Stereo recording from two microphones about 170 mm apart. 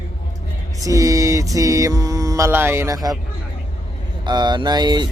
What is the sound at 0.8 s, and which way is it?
Mantra, 20° right (ahead or behind).